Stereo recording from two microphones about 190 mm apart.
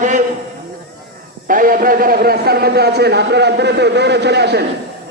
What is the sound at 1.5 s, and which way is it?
A man's voice, 45° right (ahead or behind).